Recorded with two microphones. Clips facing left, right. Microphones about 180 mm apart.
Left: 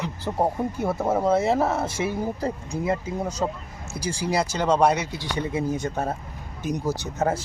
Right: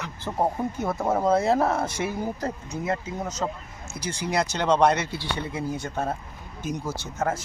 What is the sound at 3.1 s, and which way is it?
Speech, 10° left (ahead or behind).